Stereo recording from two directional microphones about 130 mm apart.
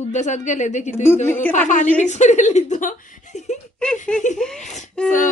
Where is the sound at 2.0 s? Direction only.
65° left (ahead or behind).